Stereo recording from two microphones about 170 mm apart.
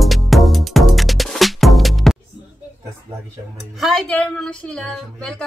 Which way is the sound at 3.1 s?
25° right (ahead or behind).